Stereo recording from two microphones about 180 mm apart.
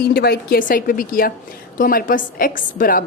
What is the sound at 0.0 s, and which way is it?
A woman's voice, 60° left (ahead or behind).